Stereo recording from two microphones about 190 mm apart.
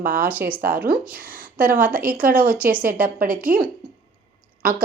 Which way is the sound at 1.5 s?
50° right (ahead or behind).